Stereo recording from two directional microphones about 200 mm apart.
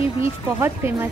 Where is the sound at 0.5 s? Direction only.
10° right (ahead or behind).